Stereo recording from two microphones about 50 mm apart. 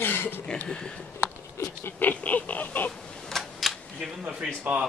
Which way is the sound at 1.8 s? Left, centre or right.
Left.